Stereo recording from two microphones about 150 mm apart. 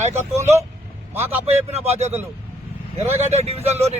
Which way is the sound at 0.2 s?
20° right (ahead or behind).